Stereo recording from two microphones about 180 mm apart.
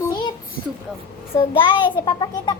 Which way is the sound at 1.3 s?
25° left (ahead or behind).